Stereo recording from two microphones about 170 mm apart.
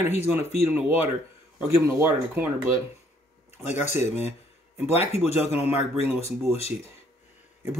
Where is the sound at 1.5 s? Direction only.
15° right (ahead or behind).